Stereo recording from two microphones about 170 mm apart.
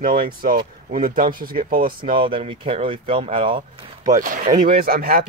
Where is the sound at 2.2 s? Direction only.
35° right (ahead or behind).